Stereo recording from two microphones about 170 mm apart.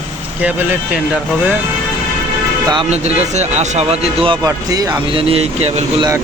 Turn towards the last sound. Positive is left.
turn(degrees=-35)  # may be behind; listen again after turning